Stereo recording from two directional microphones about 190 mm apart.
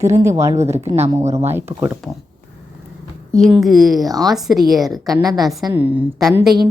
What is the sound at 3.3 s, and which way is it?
Speech, centre (ahead or behind).